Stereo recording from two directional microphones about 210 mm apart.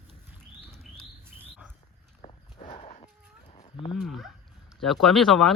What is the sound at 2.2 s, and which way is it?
Walk, 30° left (ahead or behind).